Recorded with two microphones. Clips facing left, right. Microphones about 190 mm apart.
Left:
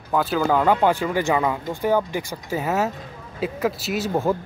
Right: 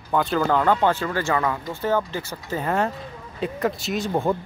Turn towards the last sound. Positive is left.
turn(degrees=0)  # may be behind; listen again after turning